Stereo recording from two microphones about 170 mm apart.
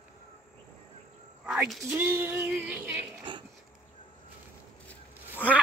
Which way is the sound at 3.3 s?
30° right (ahead or behind).